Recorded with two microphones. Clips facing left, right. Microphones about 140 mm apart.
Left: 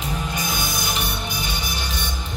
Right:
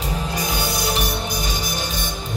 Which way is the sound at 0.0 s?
35° right (ahead or behind).